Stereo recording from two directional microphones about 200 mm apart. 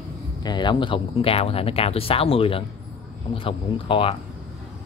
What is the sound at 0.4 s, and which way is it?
Speech, 20° left (ahead or behind).